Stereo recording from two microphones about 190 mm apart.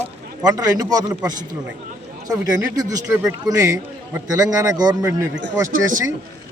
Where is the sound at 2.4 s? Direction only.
15° right (ahead or behind).